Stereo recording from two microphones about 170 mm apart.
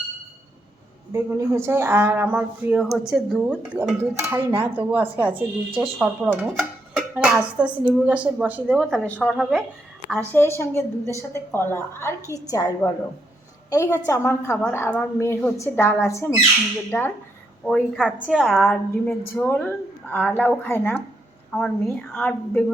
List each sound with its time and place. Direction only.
1.1 s speech: 15° right (ahead or behind)
5.3 s speech: 30° right (ahead or behind)
6.0 s speech: 5° right (ahead or behind)
8.8 s a woman's voice: 5° left (ahead or behind)
10.1 s a woman's voice: 15° left (ahead or behind)
17.7 s a woman's voice: centre (ahead or behind)